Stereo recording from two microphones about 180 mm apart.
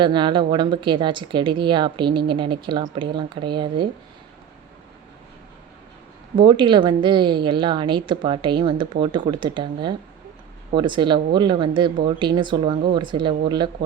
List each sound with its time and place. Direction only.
0.0 s a woman's voice: 25° right (ahead or behind)
6.3 s a woman's voice: 25° right (ahead or behind)